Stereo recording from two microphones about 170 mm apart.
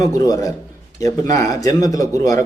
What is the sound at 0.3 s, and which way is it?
A man's voice, 20° left (ahead or behind).